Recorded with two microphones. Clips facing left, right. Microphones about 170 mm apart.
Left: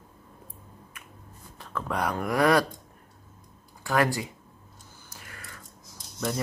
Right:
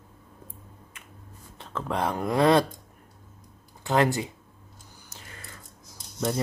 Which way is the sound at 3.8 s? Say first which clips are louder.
Right 2 dB; 20° right (ahead or behind).